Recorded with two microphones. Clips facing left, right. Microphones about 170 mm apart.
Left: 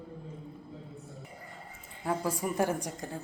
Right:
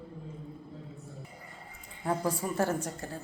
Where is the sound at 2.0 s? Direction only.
5° left (ahead or behind).